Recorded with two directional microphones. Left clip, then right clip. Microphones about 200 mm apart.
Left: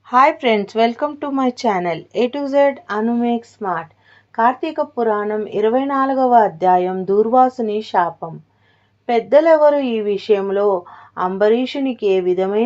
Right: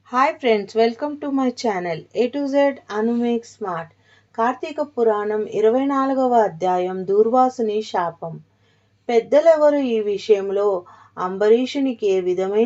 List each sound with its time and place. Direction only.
0.1 s speech: 20° left (ahead or behind)
9.0 s speech: 20° left (ahead or behind)